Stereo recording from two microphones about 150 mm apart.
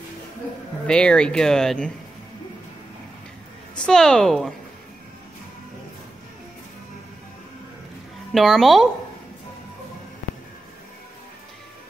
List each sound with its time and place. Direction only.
0.8 s speech: 5° left (ahead or behind)
3.7 s speech: 5° left (ahead or behind)
8.3 s speech: centre (ahead or behind)